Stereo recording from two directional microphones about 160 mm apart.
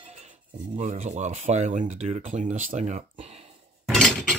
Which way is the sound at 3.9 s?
5° left (ahead or behind).